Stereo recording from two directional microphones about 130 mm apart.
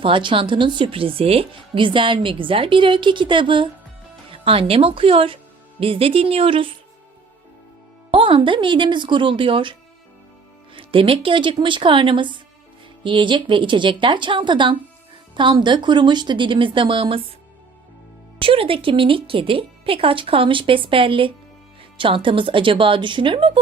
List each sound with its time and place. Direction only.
0.0 s speech: 40° right (ahead or behind)
8.1 s speech: 40° right (ahead or behind)
10.8 s speech: 45° right (ahead or behind)
18.3 s speech: 45° right (ahead or behind)